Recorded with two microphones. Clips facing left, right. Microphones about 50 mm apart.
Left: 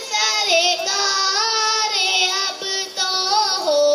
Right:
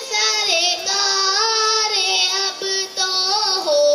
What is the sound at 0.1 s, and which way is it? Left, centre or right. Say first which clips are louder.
Child singing: left 2 dB; left.